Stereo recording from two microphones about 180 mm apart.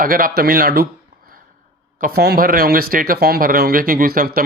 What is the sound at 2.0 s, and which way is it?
Speech, 55° right (ahead or behind).